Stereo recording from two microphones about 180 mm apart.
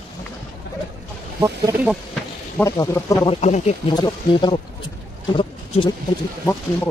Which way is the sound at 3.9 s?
25° left (ahead or behind).